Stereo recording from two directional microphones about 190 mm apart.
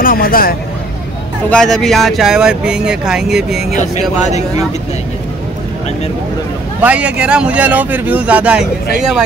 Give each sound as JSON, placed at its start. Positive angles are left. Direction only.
{"t": 0.0, "sound": "vehicle", "side_deg": 50}
{"t": 1.5, "sound": "speech", "side_deg": 5}
{"t": 3.7, "sound": "speech", "side_deg": 40}
{"t": 6.8, "sound": "speech", "side_deg": -5}